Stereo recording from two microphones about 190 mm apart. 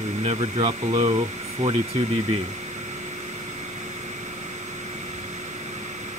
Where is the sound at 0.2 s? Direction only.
40° right (ahead or behind).